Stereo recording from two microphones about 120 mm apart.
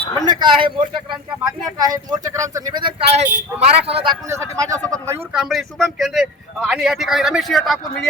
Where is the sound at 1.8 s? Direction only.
30° right (ahead or behind).